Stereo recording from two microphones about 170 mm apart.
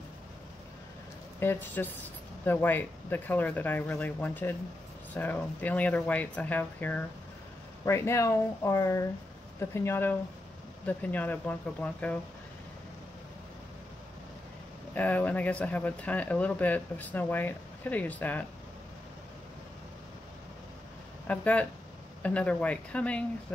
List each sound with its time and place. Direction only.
1.4 s speech: 10° left (ahead or behind)
15.0 s speech: 10° left (ahead or behind)
21.3 s speech: 5° left (ahead or behind)